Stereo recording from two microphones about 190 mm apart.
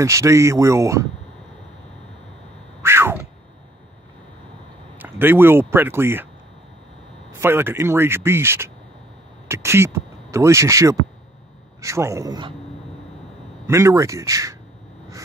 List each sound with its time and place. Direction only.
0.0 s speech: 15° right (ahead or behind)
2.8 s a sound: 15° right (ahead or behind)
4.9 s speech: 10° right (ahead or behind)
7.3 s speech: 10° right (ahead or behind)
13.7 s speech: 15° right (ahead or behind)